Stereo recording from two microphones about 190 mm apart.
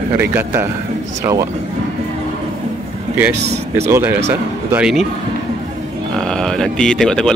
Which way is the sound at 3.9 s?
10° right (ahead or behind).